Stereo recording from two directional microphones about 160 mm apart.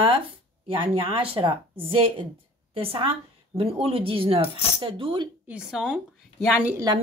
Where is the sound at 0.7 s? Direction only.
35° right (ahead or behind).